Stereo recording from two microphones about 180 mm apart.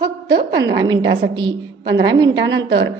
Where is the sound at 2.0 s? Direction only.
25° right (ahead or behind).